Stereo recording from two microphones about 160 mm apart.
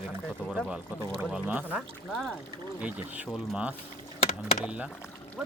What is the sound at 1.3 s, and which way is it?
Speech, 10° right (ahead or behind).